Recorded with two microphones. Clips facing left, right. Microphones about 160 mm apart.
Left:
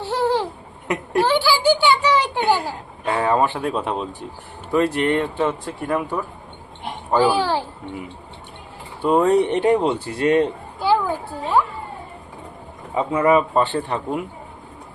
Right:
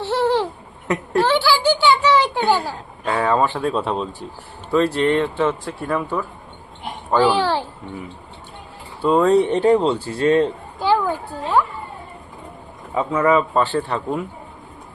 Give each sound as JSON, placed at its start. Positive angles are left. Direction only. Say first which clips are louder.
{"t": 0.0, "sound": "laughter", "louder": "right 2 dB", "side_deg": 10}
{"t": 0.9, "sound": "a sound", "louder": "right 1 dB", "side_deg": 10}
{"t": 3.4, "sound": "speech", "louder": "right 1 dB", "side_deg": 15}
{"t": 9.0, "sound": "speech", "louder": "right 1 dB", "side_deg": 15}
{"t": 10.8, "sound": "a sound", "louder": "right 1 dB", "side_deg": 10}
{"t": 13.0, "sound": "a man's voice", "louder": "even", "side_deg": 25}